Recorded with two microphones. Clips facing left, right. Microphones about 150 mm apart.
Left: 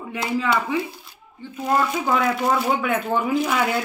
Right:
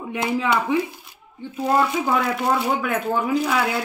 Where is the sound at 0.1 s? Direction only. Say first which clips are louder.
Right 1 dB; 20° right (ahead or behind).